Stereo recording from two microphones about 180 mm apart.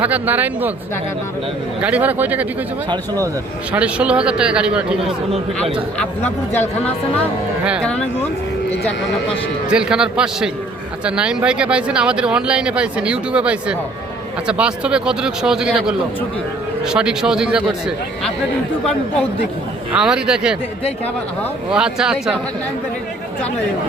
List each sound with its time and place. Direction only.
0.0 s speech: 10° right (ahead or behind)
1.8 s speech: 10° right (ahead or behind)
3.7 s speech: 5° right (ahead or behind)
6.0 s speech: 10° left (ahead or behind)
9.6 s speech: 5° right (ahead or behind)
19.9 s speech: 5° right (ahead or behind)
21.7 s speech: 5° right (ahead or behind)